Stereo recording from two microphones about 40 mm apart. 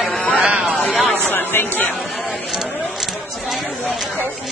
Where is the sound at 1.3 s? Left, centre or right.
Left.